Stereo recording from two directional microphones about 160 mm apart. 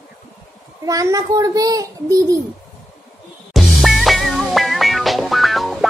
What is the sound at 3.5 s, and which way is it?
Music, centre (ahead or behind).